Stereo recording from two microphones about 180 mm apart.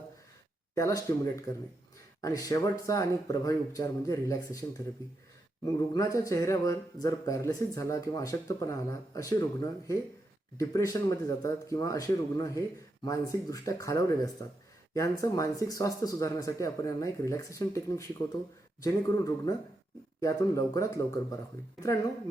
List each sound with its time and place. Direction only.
0.8 s speech: 15° left (ahead or behind)
5.6 s speech: 20° left (ahead or behind)